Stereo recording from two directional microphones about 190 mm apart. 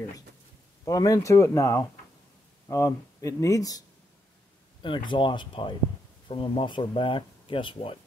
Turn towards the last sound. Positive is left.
turn(degrees=30)  # may be behind; listen again after turning